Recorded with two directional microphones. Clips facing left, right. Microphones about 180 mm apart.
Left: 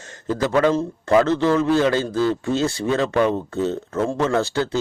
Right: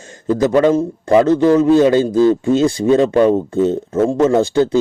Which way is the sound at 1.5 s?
20° right (ahead or behind).